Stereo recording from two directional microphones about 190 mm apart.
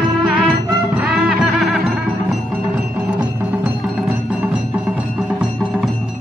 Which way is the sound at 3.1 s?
10° right (ahead or behind).